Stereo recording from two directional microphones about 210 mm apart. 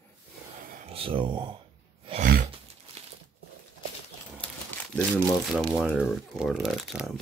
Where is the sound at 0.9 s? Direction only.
25° right (ahead or behind).